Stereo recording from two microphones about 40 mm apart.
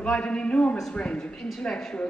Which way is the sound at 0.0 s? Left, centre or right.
Left.